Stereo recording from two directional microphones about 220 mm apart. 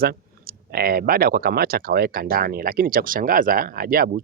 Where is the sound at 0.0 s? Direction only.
45° right (ahead or behind).